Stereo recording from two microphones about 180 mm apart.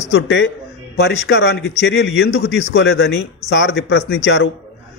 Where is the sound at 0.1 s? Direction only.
80° left.